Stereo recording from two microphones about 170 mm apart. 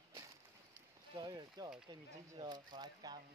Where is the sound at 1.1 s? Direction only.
25° right (ahead or behind).